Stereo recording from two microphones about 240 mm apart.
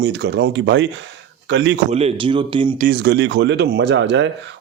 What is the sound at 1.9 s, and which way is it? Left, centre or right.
Speech, right.